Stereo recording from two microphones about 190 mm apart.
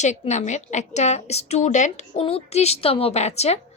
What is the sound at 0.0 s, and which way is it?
A woman's voice, 40° left (ahead or behind).